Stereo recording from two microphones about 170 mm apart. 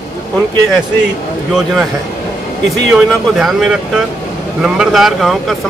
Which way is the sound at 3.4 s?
5° right (ahead or behind).